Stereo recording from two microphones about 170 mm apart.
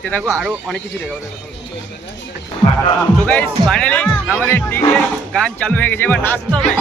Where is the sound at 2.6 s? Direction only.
35° left (ahead or behind).